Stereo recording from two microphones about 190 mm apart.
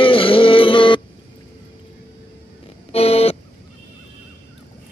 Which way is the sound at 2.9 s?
30° left (ahead or behind).